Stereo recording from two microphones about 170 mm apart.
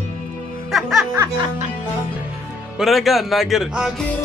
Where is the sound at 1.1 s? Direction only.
15° right (ahead or behind).